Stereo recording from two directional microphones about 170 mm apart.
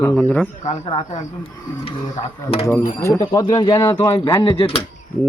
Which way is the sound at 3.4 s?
30° left (ahead or behind).